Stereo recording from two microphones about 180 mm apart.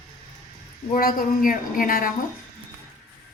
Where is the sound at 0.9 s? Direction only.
55° left (ahead or behind).